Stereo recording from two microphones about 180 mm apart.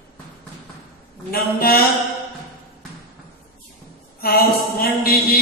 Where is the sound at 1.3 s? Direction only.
60° left (ahead or behind).